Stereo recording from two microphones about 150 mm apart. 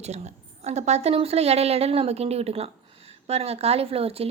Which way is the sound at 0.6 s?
50° right (ahead or behind).